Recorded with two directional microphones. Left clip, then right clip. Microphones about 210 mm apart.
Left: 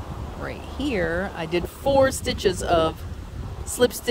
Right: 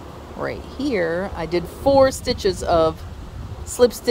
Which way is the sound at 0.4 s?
5° right (ahead or behind).